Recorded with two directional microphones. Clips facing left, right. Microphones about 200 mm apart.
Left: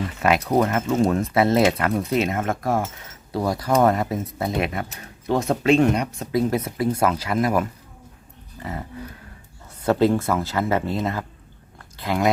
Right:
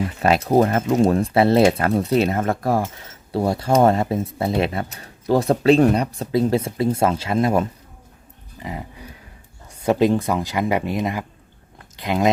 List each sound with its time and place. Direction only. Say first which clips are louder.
0.2 s speech: right 3 dB; 30° right (ahead or behind)
8.5 s dog: even; 15° right (ahead or behind)
9.8 s speech: right 1 dB; 15° right (ahead or behind)
11.8 s chewing: right 2 dB; 20° right (ahead or behind)